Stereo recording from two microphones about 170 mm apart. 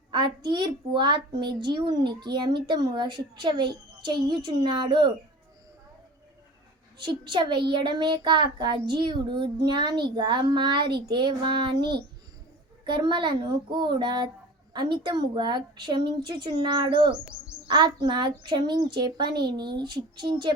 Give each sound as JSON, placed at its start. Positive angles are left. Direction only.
{"t": 0.1, "sound": "a child's voice", "side_deg": -25}
{"t": 7.0, "sound": "a child's voice", "side_deg": -25}
{"t": 12.8, "sound": "a child's voice", "side_deg": -30}